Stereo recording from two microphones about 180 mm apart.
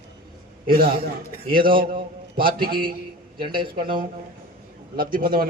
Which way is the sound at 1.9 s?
55° right (ahead or behind).